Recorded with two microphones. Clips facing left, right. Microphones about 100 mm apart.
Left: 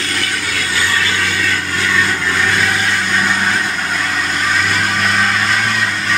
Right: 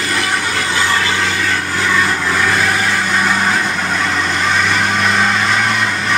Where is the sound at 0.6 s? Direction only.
25° right (ahead or behind); by 5.9 s centre (ahead or behind).